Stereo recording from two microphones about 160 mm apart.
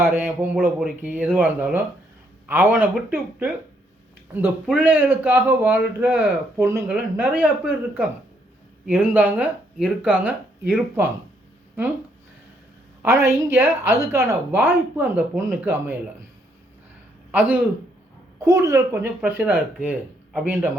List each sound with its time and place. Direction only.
0.0 s a man's voice: 15° right (ahead or behind)
13.0 s a man's voice: 15° right (ahead or behind)
18.3 s a man's voice: 20° right (ahead or behind)